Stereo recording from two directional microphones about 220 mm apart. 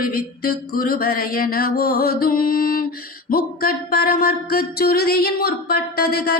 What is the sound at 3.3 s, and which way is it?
Speech, 40° left (ahead or behind).